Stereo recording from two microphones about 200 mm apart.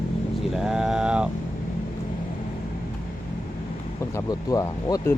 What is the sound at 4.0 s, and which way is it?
Speech, 15° left (ahead or behind).